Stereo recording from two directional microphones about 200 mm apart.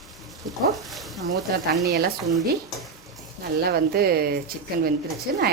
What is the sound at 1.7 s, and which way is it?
Speech, 55° right (ahead or behind).